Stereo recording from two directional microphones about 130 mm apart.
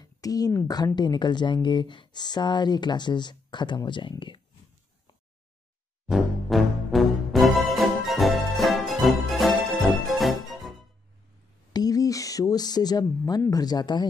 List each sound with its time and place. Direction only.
0.0 s speech: 30° left (ahead or behind)
6.0 s music: centre (ahead or behind)
11.7 s speech: 30° left (ahead or behind)